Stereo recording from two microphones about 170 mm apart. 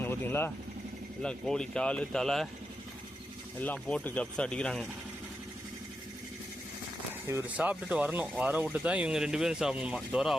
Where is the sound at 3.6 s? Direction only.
10° left (ahead or behind).